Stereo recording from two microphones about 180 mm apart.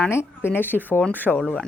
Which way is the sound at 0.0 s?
15° left (ahead or behind).